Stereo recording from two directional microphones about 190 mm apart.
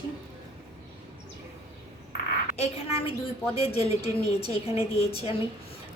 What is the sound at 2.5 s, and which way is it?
A woman's voice, 35° left (ahead or behind).